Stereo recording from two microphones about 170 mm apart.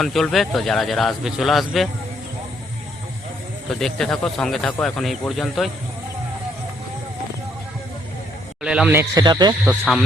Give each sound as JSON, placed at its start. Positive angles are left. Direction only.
{"t": 0.0, "sound": "speech", "side_deg": 0}
{"t": 3.7, "sound": "speech", "side_deg": 5}
{"t": 8.6, "sound": "speech", "side_deg": -5}
{"t": 9.6, "sound": "speech", "side_deg": 0}